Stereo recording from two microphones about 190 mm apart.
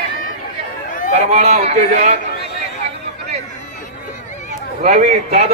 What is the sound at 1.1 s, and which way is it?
A man's voice, 35° right (ahead or behind).